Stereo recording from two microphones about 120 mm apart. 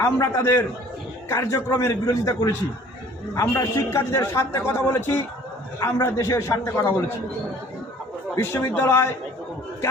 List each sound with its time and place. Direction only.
0.0 s a man's voice: 25° left (ahead or behind)
8.4 s a man's voice: 20° left (ahead or behind)